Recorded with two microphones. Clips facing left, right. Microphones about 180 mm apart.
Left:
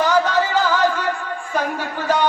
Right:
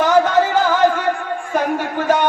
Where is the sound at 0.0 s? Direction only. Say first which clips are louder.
Right 4 dB; 50° right (ahead or behind).